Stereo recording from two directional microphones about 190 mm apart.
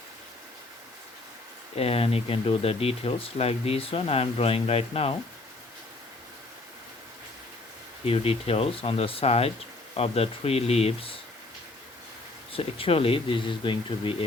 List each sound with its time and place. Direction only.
1.7 s speech: 30° left (ahead or behind)
8.0 s speech: 30° left (ahead or behind)
12.5 s speech: 30° left (ahead or behind)